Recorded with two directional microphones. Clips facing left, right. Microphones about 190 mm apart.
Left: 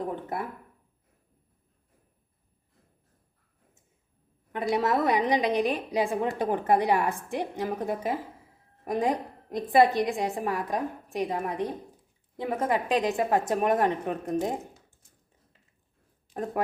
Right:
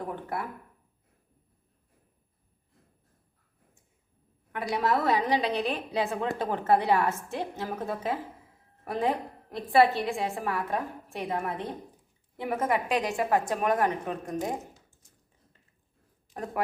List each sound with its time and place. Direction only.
0.0 s a woman's voice: 20° left (ahead or behind)
4.5 s a woman's voice: 20° left (ahead or behind)